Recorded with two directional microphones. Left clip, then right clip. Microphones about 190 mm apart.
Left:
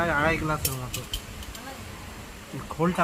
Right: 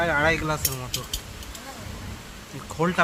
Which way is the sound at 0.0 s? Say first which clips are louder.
Right 2 dB; 35° right (ahead or behind).